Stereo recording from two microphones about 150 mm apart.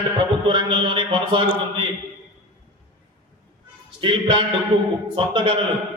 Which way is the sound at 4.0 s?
35° right (ahead or behind).